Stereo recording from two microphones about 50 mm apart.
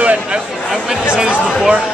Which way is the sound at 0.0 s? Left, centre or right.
Right.